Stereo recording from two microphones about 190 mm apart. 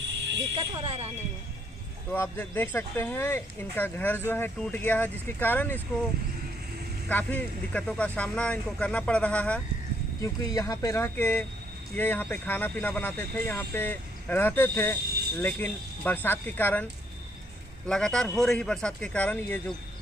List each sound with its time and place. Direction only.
0.6 s speech: 30° right (ahead or behind)
2.1 s speech: 10° left (ahead or behind)
7.1 s speech: 10° left (ahead or behind)
15.0 s a sound: 55° right (ahead or behind)
15.3 s speech: 10° left (ahead or behind)
17.8 s speech: 5° left (ahead or behind)